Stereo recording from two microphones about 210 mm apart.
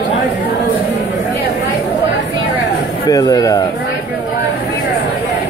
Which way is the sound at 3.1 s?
15° left (ahead or behind).